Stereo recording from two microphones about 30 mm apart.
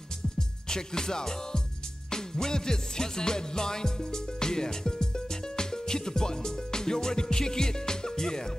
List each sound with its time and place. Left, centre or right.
0.4 s music: left